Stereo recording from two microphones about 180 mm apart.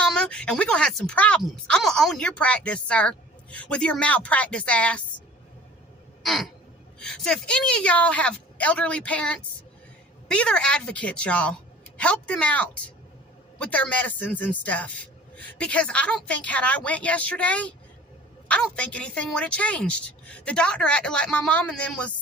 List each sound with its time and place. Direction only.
0.0 s speech: 5° left (ahead or behind)
6.2 s a sound: centre (ahead or behind)
7.0 s a woman's voice: 5° left (ahead or behind)